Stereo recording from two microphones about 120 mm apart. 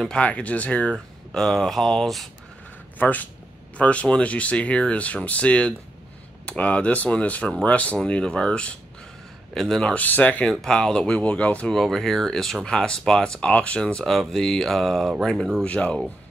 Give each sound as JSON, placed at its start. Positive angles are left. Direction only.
{"t": 0.0, "sound": "speech", "side_deg": 10}
{"t": 3.0, "sound": "speech", "side_deg": 15}